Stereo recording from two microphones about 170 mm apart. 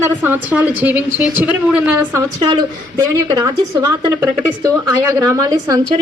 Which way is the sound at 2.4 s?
25° right (ahead or behind).